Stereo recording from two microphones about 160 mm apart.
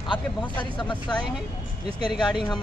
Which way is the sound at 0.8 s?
30° left (ahead or behind).